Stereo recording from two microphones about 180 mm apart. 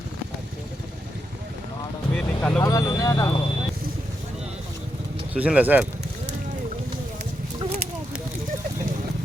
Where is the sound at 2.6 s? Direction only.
20° left (ahead or behind).